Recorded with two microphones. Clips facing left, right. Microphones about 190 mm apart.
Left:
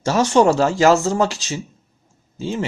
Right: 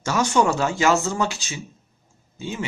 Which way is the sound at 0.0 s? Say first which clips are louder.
Left 5 dB; 30° left (ahead or behind).